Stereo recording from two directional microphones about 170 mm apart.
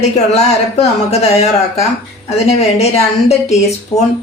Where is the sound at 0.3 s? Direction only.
40° left (ahead or behind).